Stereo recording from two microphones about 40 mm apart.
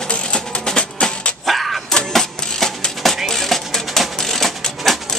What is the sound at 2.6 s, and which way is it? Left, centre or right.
Music, centre.